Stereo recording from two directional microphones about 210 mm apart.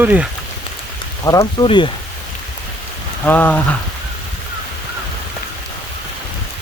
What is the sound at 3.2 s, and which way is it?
Rain on surface, 5° left (ahead or behind).